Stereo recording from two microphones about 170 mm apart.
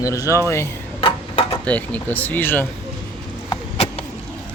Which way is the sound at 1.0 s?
35° left (ahead or behind).